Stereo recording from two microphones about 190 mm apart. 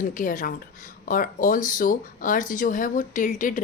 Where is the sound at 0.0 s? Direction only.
45° left (ahead or behind).